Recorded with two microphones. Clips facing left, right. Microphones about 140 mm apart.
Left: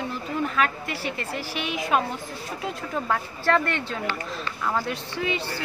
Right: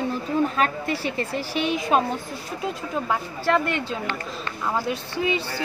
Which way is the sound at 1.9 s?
30° right (ahead or behind).